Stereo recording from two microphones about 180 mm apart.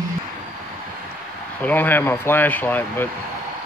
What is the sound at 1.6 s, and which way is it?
Speech, 10° left (ahead or behind).